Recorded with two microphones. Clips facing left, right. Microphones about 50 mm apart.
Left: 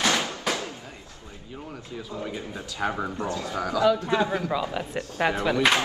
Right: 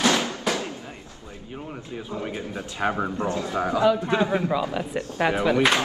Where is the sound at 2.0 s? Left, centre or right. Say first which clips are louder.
Right 3 dB; right.